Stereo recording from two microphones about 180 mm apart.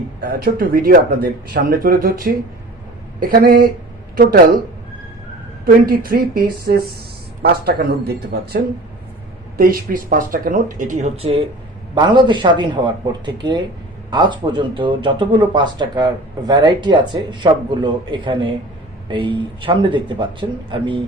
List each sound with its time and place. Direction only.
0.2 s speech: 55° right (ahead or behind)
5.6 s speech: 50° right (ahead or behind); by 11.3 s 35° right (ahead or behind)
11.9 s speech: 25° right (ahead or behind)